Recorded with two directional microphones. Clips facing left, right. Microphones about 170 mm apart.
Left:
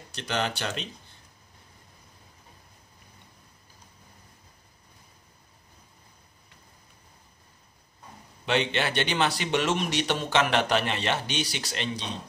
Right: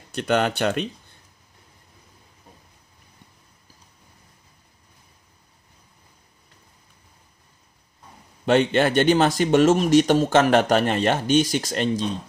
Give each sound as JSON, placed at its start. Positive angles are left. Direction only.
{"t": 0.1, "sound": "speech", "side_deg": -55}
{"t": 8.5, "sound": "speech", "side_deg": -45}